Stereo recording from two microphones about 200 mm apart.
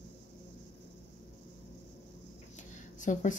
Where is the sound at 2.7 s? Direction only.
40° left (ahead or behind).